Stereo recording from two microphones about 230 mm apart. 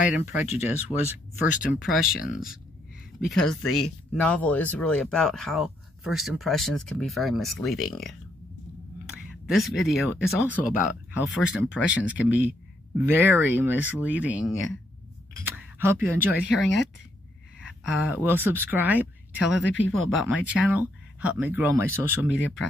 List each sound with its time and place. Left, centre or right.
0.3 s speech: centre
1.5 s speech: left
1.8 s speech: centre
3.6 s speech: left
4.1 s speech: centre
17.6 s speech: centre
19.6 s speech: left
20.2 s speech: centre